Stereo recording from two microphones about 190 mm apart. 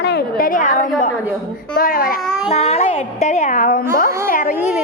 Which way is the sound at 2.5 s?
35° left (ahead or behind).